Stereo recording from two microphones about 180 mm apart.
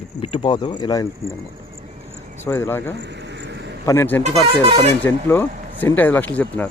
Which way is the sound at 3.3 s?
75° right (ahead or behind).